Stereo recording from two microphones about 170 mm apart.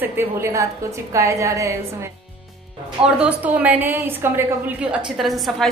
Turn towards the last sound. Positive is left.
turn(degrees=0)  # may be behind; listen again after turning